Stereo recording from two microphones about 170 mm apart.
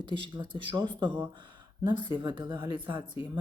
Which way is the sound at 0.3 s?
25° right (ahead or behind).